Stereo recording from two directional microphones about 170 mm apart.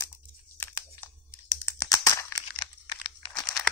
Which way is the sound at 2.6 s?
25° left (ahead or behind).